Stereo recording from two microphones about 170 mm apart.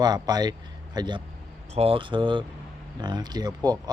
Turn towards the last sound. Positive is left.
turn(degrees=-25)  # may be behind; listen again after turning